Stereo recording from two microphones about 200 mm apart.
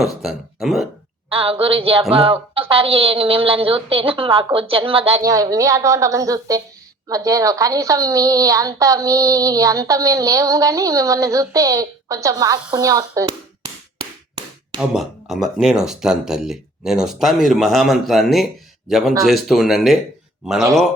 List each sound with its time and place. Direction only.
0.0 s speech: centre (ahead or behind)
1.3 s a woman's voice: 30° right (ahead or behind)
5.2 s a woman's voice: 15° right (ahead or behind)
14.8 s speech: centre (ahead or behind)